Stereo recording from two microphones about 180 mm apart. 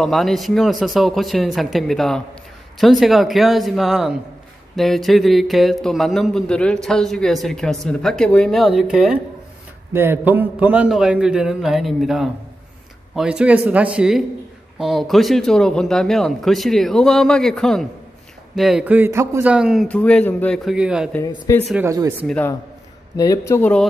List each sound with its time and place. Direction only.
0.0 s a man's voice: centre (ahead or behind)
9.9 s a man's voice: 10° right (ahead or behind)
21.5 s speech: 15° left (ahead or behind)
21.8 s speech: 20° right (ahead or behind)
23.1 s speech: 20° left (ahead or behind)